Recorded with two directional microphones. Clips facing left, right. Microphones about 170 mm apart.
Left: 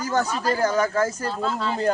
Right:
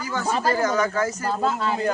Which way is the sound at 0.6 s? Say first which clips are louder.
Left 1 dB; 30° left (ahead or behind).